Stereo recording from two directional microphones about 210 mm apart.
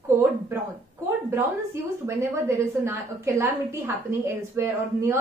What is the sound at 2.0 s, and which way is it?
A woman's voice, 15° right (ahead or behind).